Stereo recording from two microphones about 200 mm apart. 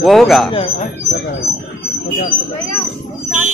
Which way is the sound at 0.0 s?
Centre (ahead or behind).